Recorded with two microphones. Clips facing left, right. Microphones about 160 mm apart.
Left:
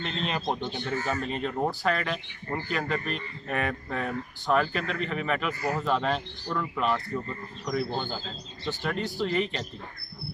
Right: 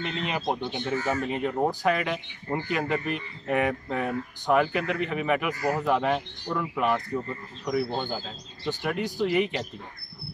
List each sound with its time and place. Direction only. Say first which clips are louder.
0.3 s speech: right 2 dB; 10° right (ahead or behind)